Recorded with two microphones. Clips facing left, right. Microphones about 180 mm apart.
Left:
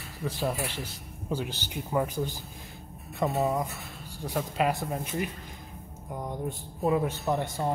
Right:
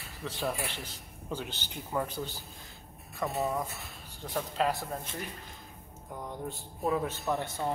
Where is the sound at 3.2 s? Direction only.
25° left (ahead or behind).